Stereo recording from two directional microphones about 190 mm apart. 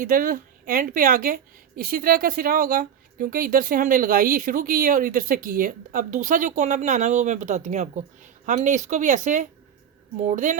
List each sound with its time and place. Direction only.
0.0 s a woman's voice: 45° right (ahead or behind)